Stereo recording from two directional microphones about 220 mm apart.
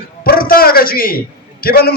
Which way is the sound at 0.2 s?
40° left (ahead or behind).